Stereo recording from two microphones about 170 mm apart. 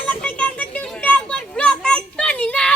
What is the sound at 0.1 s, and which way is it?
Music, 10° left (ahead or behind).